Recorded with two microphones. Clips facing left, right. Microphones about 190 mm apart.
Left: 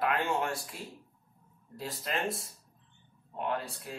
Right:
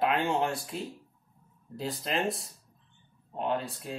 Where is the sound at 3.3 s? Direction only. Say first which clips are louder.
Right 3 dB; 25° right (ahead or behind).